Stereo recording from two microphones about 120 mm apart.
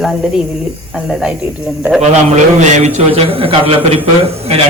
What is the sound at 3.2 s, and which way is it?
Speech, 50° right (ahead or behind).